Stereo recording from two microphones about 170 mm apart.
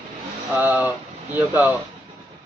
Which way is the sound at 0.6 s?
10° right (ahead or behind).